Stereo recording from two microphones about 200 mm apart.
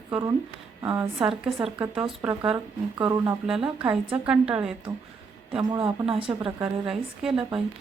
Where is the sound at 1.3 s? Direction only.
25° right (ahead or behind).